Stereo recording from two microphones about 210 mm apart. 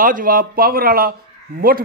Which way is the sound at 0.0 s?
40° right (ahead or behind).